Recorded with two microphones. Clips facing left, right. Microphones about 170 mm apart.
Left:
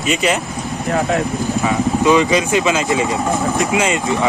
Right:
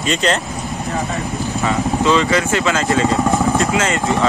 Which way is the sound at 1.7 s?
15° left (ahead or behind).